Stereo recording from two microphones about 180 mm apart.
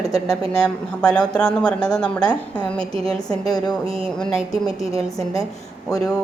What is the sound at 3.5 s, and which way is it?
Speech, 20° left (ahead or behind).